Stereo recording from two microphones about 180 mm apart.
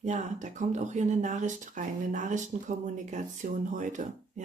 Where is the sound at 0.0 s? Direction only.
40° right (ahead or behind).